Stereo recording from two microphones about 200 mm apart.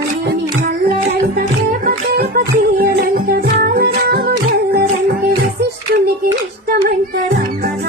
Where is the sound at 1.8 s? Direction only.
45° right (ahead or behind).